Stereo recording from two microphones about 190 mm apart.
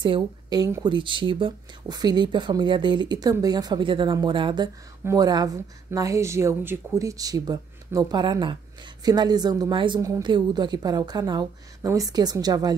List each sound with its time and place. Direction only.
0.0 s a woman's voice: 25° right (ahead or behind)